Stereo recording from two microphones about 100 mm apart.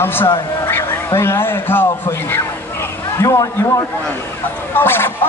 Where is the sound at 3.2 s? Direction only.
30° left (ahead or behind).